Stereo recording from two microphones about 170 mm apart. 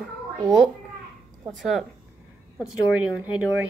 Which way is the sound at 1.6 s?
Centre (ahead or behind).